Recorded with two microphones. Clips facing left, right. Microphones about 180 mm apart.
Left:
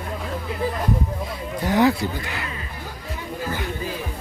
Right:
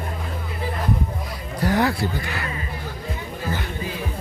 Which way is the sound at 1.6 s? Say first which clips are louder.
Left 2 dB; 15° left (ahead or behind).